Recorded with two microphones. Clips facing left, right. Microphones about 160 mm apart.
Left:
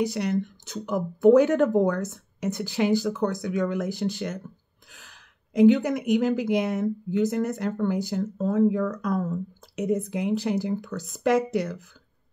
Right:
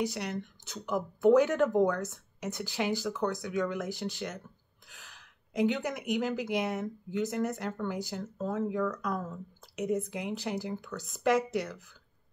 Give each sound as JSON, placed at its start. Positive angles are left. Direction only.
{"t": 0.1, "sound": "speech", "side_deg": 35}
{"t": 5.6, "sound": "speech", "side_deg": 35}
{"t": 9.8, "sound": "speech", "side_deg": 30}